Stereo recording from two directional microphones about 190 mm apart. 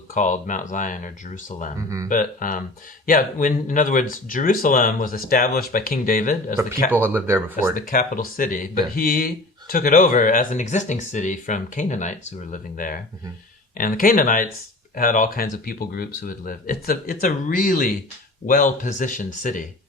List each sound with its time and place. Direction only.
0.1 s speech: 40° left (ahead or behind)
7.0 s speech: 10° right (ahead or behind)
7.5 s speech: 45° left (ahead or behind)